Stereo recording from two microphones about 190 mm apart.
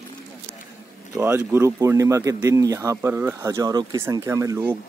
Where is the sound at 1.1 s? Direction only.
10° right (ahead or behind).